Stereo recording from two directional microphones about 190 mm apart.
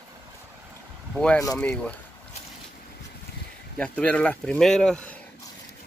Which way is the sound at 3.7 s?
5° left (ahead or behind).